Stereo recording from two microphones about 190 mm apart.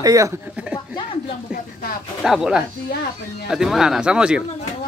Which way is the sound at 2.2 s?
Centre (ahead or behind).